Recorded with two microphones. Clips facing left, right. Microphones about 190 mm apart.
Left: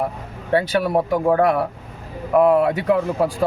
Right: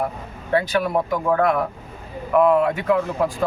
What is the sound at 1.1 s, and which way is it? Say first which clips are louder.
A man's voice: left 3 dB; 30° left (ahead or behind).